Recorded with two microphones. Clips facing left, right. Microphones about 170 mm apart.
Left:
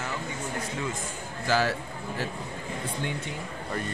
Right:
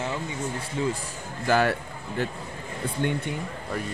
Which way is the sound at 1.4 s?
55° right (ahead or behind).